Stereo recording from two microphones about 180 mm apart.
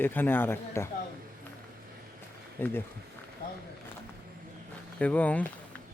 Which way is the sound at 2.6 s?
10° left (ahead or behind).